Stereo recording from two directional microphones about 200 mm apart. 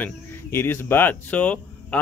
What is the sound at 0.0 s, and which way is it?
Speech, 10° left (ahead or behind).